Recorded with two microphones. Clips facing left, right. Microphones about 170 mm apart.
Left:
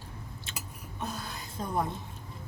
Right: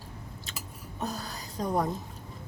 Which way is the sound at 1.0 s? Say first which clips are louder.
Right 2 dB; 40° right (ahead or behind).